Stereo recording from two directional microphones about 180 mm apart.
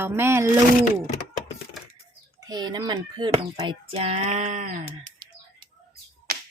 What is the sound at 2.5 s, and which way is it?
Speech, 25° right (ahead or behind).